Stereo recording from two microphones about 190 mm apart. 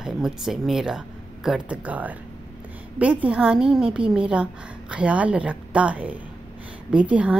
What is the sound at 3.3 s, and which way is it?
A woman's voice, 5° right (ahead or behind).